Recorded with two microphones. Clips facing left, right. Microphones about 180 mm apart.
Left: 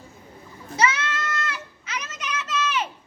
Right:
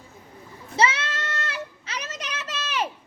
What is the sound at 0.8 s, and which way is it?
Goat, 30° right (ahead or behind).